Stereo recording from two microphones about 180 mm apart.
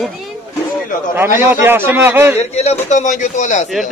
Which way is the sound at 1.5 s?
15° right (ahead or behind).